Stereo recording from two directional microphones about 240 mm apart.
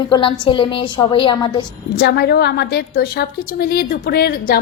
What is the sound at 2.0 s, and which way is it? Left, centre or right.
A woman's voice, left.